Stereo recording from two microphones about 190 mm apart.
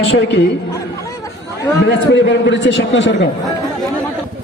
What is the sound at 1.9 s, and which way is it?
A man's voice, 65° left (ahead or behind).